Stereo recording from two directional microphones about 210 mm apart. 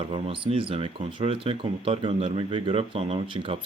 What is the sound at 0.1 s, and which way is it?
Speech, 25° right (ahead or behind).